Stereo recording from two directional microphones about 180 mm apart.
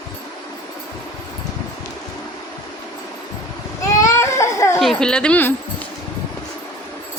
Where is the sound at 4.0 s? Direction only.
15° left (ahead or behind).